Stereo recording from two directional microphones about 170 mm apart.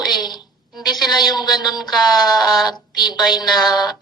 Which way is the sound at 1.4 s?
25° left (ahead or behind).